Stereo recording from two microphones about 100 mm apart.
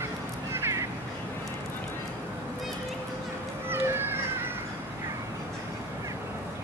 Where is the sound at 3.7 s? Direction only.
20° right (ahead or behind).